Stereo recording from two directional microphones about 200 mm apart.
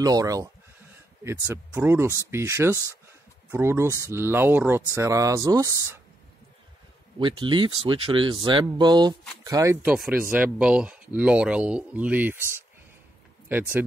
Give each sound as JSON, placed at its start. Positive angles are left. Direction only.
{"t": 0.0, "sound": "speech", "side_deg": -20}
{"t": 7.2, "sound": "speech", "side_deg": -25}
{"t": 13.5, "sound": "speech", "side_deg": -10}